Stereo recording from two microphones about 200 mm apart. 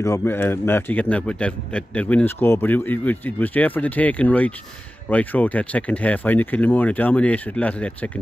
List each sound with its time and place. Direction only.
0.0 s a man's voice: 10° left (ahead or behind)